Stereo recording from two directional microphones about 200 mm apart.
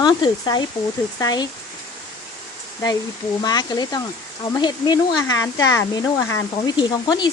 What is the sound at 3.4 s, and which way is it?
Speech, 20° left (ahead or behind).